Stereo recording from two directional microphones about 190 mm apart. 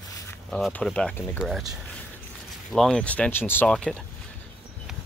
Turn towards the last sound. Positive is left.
turn(degrees=5)  # may be behind; listen again after turning